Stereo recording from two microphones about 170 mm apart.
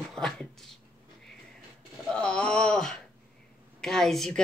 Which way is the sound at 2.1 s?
5° left (ahead or behind).